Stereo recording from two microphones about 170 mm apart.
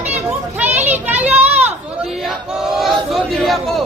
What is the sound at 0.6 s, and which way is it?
Children playing, 10° right (ahead or behind).